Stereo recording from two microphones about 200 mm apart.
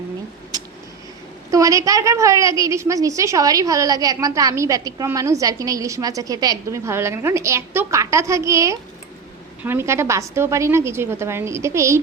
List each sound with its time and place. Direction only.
1.5 s a woman's voice: 15° right (ahead or behind)